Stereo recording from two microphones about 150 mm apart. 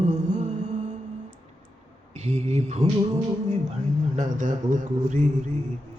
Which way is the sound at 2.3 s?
50° right (ahead or behind).